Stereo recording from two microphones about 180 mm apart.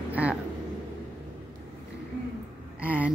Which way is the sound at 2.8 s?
10° right (ahead or behind).